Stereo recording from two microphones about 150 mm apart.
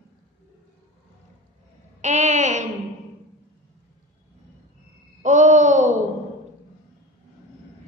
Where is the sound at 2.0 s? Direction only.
50° right (ahead or behind).